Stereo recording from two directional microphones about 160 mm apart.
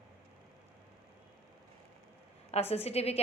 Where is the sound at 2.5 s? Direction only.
40° left (ahead or behind).